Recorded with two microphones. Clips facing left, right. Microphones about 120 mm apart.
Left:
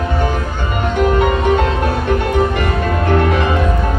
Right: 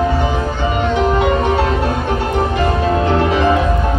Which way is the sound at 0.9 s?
50° left (ahead or behind).